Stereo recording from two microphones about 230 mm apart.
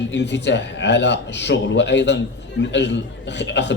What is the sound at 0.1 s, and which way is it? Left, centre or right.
Speech, left.